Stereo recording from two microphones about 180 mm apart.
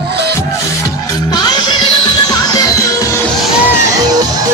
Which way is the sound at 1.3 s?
25° left (ahead or behind).